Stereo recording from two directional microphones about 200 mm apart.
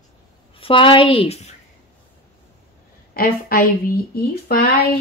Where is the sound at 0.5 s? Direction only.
25° left (ahead or behind).